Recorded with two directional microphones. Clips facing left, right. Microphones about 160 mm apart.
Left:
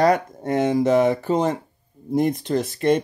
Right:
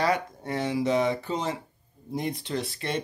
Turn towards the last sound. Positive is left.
turn(degrees=45)  # may be behind; listen again after turning